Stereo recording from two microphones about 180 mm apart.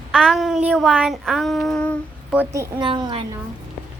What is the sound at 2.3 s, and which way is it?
Speech, 15° right (ahead or behind).